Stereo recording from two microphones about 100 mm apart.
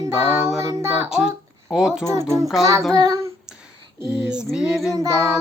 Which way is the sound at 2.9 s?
35° right (ahead or behind).